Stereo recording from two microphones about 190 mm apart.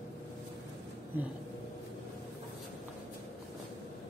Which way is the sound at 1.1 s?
10° right (ahead or behind).